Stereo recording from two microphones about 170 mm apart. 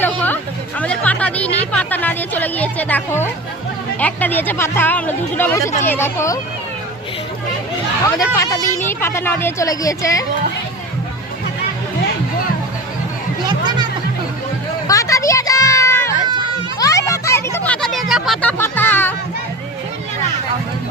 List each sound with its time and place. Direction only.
0.8 s speech: 10° left (ahead or behind)
8.0 s speech: 20° left (ahead or behind)
13.4 s chatter: 25° right (ahead or behind)
14.8 s a sound: 20° left (ahead or behind); by 18.5 s centre (ahead or behind)
18.5 s music: 10° left (ahead or behind)